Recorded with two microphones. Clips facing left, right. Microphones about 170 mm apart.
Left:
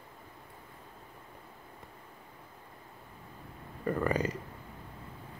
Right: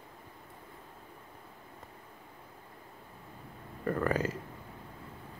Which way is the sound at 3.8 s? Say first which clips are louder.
Even; 5° left (ahead or behind).